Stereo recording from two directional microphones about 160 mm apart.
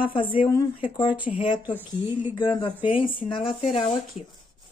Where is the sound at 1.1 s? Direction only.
10° right (ahead or behind).